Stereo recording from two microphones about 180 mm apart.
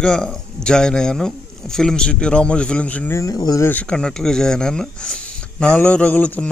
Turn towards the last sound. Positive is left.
turn(degrees=10)  # may be behind; listen again after turning